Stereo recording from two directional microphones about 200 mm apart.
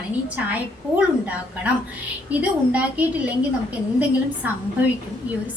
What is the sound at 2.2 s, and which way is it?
Speech, 5° right (ahead or behind).